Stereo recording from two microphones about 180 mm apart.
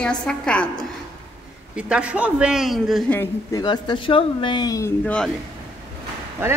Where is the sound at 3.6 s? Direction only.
25° left (ahead or behind); by 5.3 s 5° left (ahead or behind).